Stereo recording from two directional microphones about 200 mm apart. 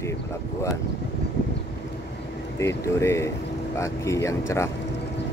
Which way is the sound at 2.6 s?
15° left (ahead or behind).